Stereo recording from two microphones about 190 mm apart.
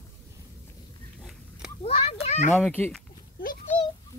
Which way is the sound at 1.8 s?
30° left (ahead or behind).